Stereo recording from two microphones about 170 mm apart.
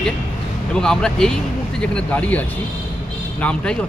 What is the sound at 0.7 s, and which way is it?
Speech, 5° left (ahead or behind).